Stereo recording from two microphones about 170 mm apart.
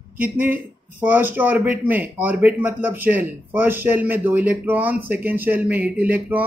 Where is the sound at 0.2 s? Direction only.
10° right (ahead or behind).